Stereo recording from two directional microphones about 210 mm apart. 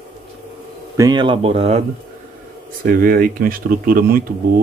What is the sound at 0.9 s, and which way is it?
Speech, 20° right (ahead or behind).